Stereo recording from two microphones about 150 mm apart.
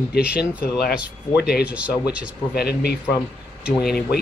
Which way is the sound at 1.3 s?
90° left.